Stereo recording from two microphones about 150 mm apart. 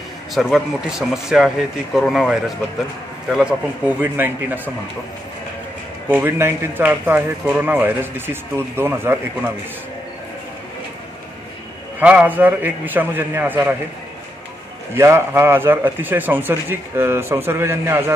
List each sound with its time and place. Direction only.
0.3 s speech: centre (ahead or behind)
6.0 s speech: 15° right (ahead or behind)
12.0 s speech: 10° right (ahead or behind)
15.0 s speech: 15° right (ahead or behind)